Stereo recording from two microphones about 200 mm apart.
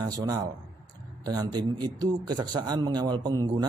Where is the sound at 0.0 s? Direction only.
20° right (ahead or behind).